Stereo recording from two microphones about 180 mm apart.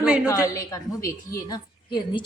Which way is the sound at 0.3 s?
20° left (ahead or behind).